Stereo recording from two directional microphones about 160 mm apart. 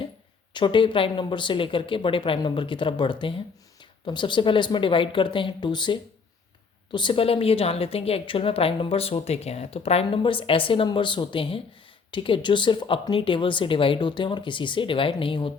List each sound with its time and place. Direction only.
0.5 s a woman's voice: 30° left (ahead or behind)